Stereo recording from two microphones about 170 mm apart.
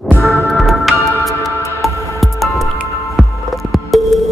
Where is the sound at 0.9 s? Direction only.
15° left (ahead or behind).